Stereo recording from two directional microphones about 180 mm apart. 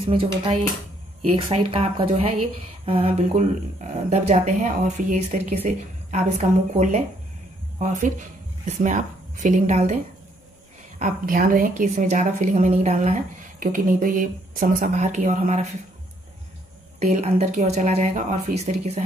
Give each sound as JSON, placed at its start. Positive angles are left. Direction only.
{"t": 0.0, "sound": "a woman's voice", "side_deg": -30}
{"t": 7.8, "sound": "a woman's voice", "side_deg": -45}
{"t": 11.0, "sound": "a woman's voice", "side_deg": -50}
{"t": 17.0, "sound": "speech", "side_deg": -35}